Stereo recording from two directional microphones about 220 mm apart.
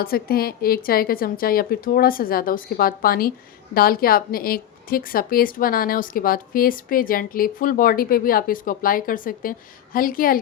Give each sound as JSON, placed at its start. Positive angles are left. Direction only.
{"t": 0.0, "sound": "a woman's voice", "side_deg": 45}